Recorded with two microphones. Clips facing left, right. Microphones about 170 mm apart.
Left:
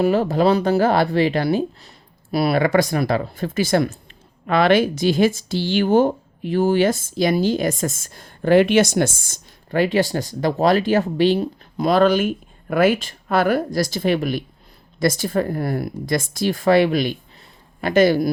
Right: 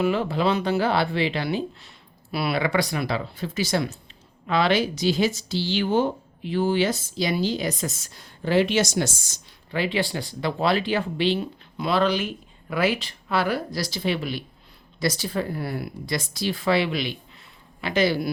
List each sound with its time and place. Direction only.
0.0 s speech: 40° left (ahead or behind)